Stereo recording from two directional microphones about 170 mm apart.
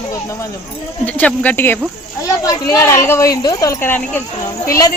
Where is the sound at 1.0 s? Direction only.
10° left (ahead or behind).